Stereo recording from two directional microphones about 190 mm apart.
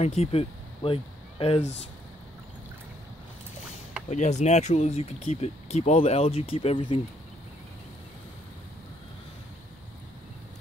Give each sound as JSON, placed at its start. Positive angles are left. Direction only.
{"t": 0.0, "sound": "speech", "side_deg": 35}
{"t": 4.1, "sound": "speech", "side_deg": 35}